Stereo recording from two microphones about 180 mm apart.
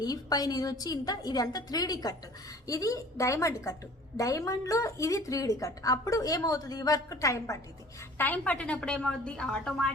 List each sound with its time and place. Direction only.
0.0 s a woman's voice: 20° left (ahead or behind); by 9.9 s 5° left (ahead or behind)